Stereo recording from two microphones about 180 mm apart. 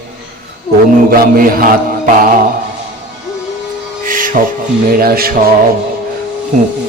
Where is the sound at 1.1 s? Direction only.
55° right (ahead or behind).